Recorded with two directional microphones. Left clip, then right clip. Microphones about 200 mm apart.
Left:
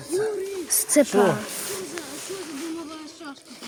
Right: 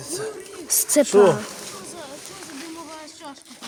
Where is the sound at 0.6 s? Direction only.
15° right (ahead or behind).